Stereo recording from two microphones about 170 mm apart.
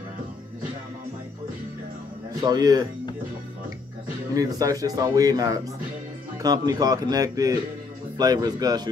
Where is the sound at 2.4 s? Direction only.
20° right (ahead or behind).